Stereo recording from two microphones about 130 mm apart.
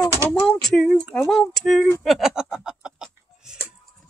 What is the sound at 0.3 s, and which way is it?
Speech, 5° left (ahead or behind).